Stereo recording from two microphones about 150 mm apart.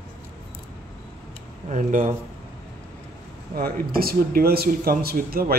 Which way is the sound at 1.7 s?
55° right (ahead or behind).